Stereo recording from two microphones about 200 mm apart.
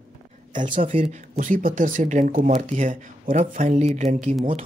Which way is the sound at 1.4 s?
40° right (ahead or behind).